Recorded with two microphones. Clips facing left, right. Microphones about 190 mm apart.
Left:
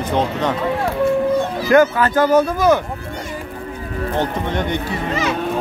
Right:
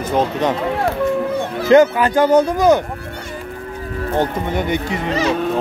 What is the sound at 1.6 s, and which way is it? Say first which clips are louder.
Speech: right 3 dB; 20° right (ahead or behind).